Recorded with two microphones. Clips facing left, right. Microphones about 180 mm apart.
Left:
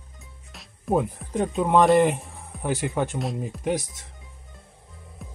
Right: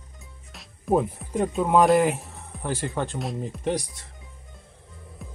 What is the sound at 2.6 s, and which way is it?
Speech, 15° left (ahead or behind).